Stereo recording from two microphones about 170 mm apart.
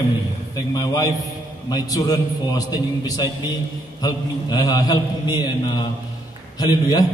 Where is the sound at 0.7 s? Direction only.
20° left (ahead or behind).